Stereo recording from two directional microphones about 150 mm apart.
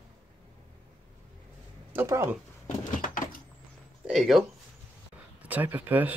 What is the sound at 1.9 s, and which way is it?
Speech, 20° right (ahead or behind).